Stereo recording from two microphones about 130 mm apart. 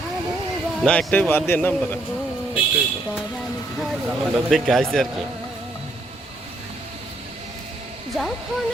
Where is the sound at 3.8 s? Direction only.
Centre (ahead or behind).